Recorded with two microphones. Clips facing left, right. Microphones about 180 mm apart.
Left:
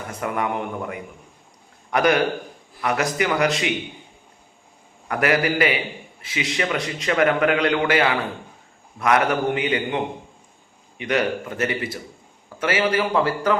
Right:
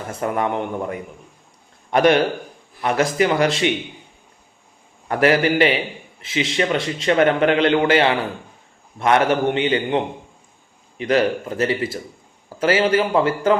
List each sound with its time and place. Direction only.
0.1 s a man's voice: 30° right (ahead or behind)
5.0 s a man's voice: 30° right (ahead or behind)